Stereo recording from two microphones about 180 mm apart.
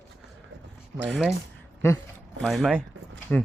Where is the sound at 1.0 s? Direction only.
Centre (ahead or behind).